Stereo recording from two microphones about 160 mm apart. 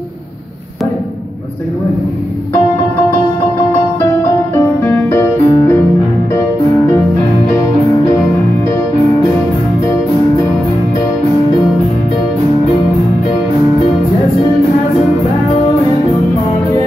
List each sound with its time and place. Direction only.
4.0 s music: 15° left (ahead or behind)